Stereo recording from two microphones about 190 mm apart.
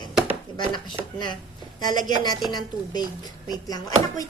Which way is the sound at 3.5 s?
20° left (ahead or behind).